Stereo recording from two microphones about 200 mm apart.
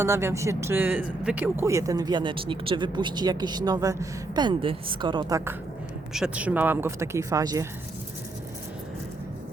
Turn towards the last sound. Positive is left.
turn(degrees=-15)  # may be behind; listen again after turning